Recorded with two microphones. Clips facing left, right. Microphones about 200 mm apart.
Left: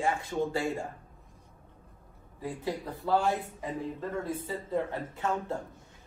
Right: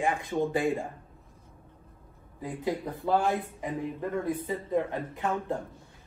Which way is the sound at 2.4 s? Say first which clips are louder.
Right 3 dB; 20° right (ahead or behind).